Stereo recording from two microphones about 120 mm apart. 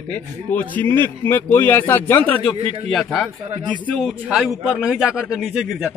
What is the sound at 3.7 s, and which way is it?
Speech, 10° left (ahead or behind).